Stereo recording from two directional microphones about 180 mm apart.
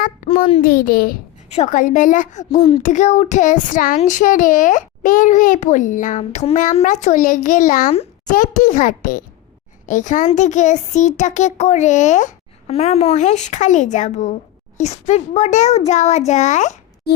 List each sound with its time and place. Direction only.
0.3 s a child's voice: 30° left (ahead or behind)
0.6 s a child's voice: 50° left (ahead or behind)
1.5 s a child's voice: 40° left (ahead or behind)